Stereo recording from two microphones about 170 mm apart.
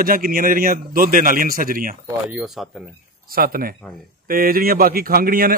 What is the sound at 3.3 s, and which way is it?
Speech, 60° right (ahead or behind).